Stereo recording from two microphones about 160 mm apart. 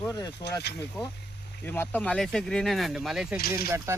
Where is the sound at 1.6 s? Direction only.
15° left (ahead or behind); by 3.3 s 5° right (ahead or behind).